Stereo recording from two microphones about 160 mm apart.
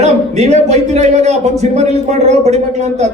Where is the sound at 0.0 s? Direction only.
45° right (ahead or behind).